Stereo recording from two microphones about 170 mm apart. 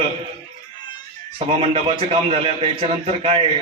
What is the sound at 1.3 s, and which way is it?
A man's voice, 35° right (ahead or behind).